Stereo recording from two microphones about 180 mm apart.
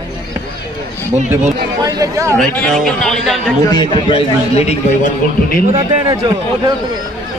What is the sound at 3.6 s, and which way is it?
A man's voice, 25° left (ahead or behind).